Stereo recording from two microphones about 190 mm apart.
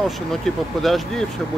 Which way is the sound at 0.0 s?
Centre (ahead or behind).